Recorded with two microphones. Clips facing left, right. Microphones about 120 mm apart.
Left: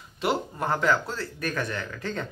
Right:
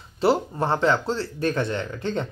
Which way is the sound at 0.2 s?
30° right (ahead or behind).